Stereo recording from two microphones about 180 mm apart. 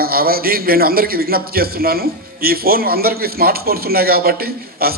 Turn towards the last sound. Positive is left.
turn(degrees=-55)  # may be behind; listen again after turning